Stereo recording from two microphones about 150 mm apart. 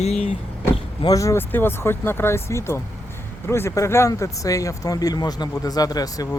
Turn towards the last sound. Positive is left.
turn(degrees=25)  # may be behind; listen again after turning